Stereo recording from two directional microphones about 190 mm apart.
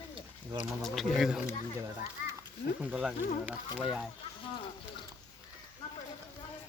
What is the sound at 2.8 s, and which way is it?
Speech, 5° right (ahead or behind).